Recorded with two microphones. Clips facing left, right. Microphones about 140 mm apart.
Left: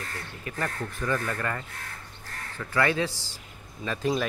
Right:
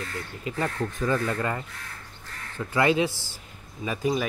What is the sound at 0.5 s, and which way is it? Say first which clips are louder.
A man's voice: right 4 dB; 20° right (ahead or behind).